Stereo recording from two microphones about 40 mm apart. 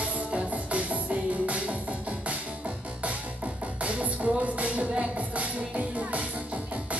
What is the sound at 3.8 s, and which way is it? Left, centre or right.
Music, right.